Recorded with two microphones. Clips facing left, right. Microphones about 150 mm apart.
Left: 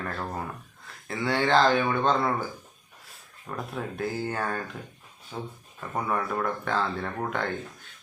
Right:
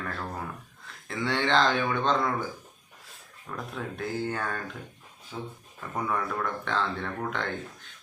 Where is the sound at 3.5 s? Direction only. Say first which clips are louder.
Left 2 dB; 20° left (ahead or behind).